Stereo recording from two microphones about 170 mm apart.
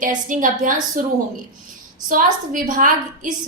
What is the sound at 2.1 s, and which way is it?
A woman's voice, 55° right (ahead or behind).